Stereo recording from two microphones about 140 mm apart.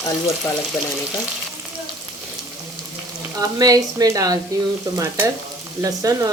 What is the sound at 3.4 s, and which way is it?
Frying, 25° right (ahead or behind).